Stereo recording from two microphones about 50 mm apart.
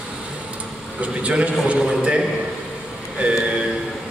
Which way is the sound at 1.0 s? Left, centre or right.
Right.